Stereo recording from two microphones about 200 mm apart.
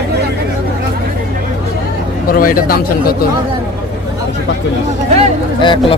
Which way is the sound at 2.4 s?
45° left (ahead or behind).